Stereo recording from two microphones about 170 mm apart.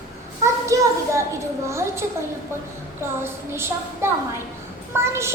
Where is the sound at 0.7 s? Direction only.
20° right (ahead or behind).